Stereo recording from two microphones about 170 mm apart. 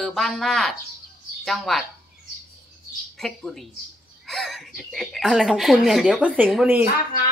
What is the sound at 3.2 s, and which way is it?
Speech, centre (ahead or behind).